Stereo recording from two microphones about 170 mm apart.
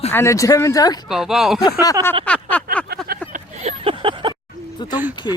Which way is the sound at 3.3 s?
35° right (ahead or behind).